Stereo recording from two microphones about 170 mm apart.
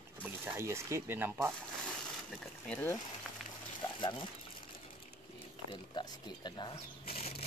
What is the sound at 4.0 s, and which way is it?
Speech, 30° left (ahead or behind).